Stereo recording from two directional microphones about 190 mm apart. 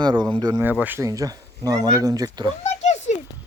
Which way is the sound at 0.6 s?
10° right (ahead or behind).